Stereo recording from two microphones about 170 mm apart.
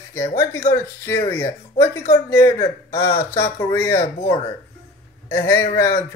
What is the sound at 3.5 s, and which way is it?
Speech, 15° left (ahead or behind).